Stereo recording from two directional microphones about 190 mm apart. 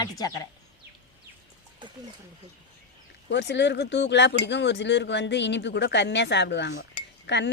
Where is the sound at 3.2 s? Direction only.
65° left (ahead or behind).